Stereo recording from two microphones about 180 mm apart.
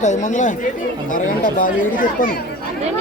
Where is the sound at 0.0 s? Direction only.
45° left (ahead or behind).